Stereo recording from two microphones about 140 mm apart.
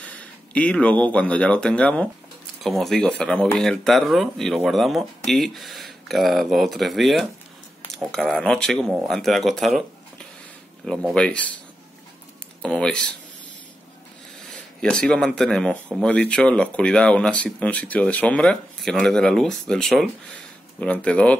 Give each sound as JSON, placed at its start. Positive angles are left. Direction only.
{"t": 0.0, "sound": "speech", "side_deg": 10}
{"t": 7.9, "sound": "cutlery", "side_deg": 5}
{"t": 8.3, "sound": "speech", "side_deg": 5}
{"t": 12.6, "sound": "speech", "side_deg": 5}
{"t": 14.8, "sound": "speech", "side_deg": 5}